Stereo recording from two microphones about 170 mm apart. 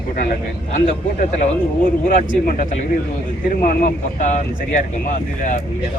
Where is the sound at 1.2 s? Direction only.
40° left (ahead or behind).